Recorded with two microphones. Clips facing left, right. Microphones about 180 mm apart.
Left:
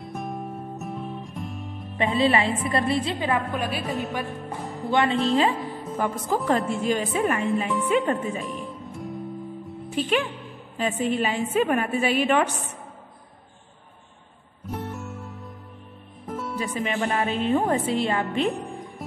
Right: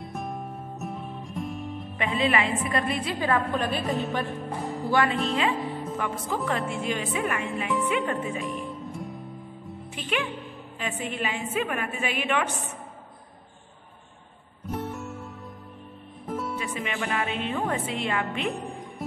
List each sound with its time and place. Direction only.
0.0 s music: centre (ahead or behind)
2.0 s speech: 35° left (ahead or behind); by 3.8 s 10° left (ahead or behind)
3.8 s music: centre (ahead or behind)
4.9 s speech: 20° left (ahead or behind)
5.5 s music: centre (ahead or behind)
5.9 s speech: 40° left (ahead or behind)
8.5 s music: centre (ahead or behind)
9.8 s speech: 35° left (ahead or behind)
14.7 s music: centre (ahead or behind)
16.3 s music: centre (ahead or behind)
16.5 s speech: 35° left (ahead or behind)